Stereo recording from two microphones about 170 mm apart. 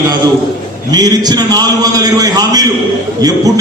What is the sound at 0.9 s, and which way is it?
A man's voice, 25° right (ahead or behind).